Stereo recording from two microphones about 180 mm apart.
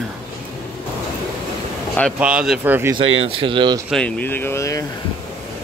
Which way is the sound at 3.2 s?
30° right (ahead or behind).